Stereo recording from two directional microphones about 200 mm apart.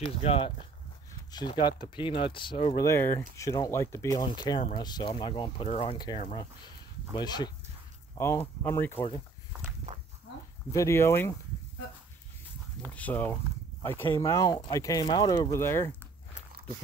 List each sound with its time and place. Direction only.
0.2 s speech: 30° left (ahead or behind); by 9.0 s 10° left (ahead or behind)
9.9 s walk: 35° right (ahead or behind)
10.7 s speech: 15° left (ahead or behind)
12.8 s speech: 5° left (ahead or behind)